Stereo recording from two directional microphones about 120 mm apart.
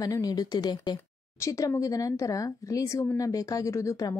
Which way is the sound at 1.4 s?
25° left (ahead or behind).